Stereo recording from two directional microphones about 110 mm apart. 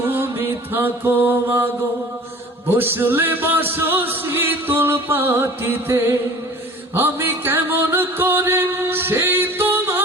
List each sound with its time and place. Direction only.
0.0 s music: 20° right (ahead or behind)